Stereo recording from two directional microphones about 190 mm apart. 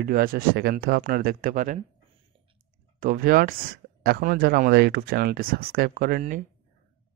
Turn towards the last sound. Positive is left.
turn(degrees=-45)  # may be behind; listen again after turning